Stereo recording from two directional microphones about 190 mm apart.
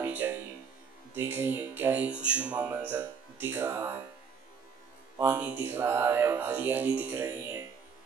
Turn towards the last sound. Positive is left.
turn(degrees=-10)  # may be behind; listen again after turning